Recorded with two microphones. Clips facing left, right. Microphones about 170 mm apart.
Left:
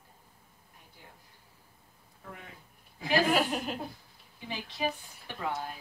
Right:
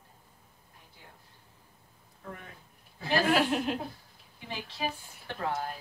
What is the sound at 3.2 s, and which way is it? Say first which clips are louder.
Speech: right 2 dB; centre (ahead or behind).